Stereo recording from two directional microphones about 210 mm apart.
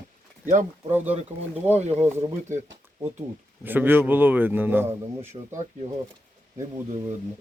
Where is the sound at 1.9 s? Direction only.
10° right (ahead or behind).